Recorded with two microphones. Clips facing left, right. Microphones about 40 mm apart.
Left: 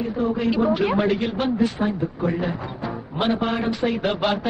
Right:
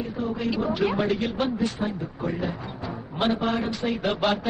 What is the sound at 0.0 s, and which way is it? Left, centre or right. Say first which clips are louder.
Speech: left 6 dB; left.